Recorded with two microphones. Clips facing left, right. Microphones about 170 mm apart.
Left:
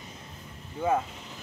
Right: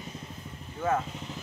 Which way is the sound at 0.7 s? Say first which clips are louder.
Left 2 dB; 15° left (ahead or behind).